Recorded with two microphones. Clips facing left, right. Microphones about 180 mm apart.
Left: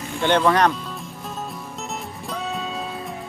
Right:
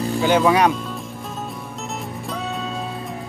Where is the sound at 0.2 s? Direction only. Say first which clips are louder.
Right 1 dB; 5° right (ahead or behind).